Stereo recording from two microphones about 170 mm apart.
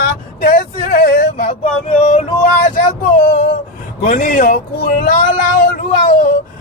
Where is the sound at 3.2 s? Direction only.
60° left (ahead or behind).